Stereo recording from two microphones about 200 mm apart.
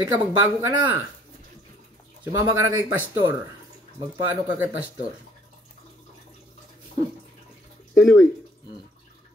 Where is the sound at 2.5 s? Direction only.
15° right (ahead or behind).